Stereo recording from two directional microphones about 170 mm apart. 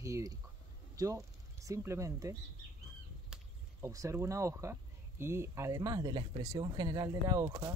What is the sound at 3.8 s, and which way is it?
Speech, 20° right (ahead or behind).